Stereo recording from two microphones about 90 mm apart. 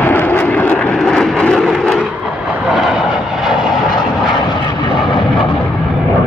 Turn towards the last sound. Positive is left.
turn(degrees=65)  # may be behind; listen again after turning